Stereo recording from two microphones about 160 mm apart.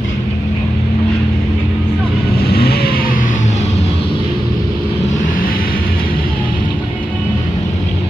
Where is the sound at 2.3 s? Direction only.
75° left (ahead or behind); by 3.5 s 55° left (ahead or behind).